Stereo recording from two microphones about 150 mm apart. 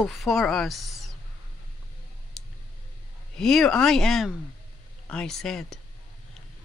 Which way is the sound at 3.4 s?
5° left (ahead or behind).